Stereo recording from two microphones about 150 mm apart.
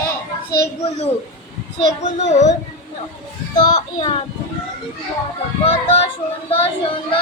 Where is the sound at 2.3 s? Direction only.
50° left (ahead or behind).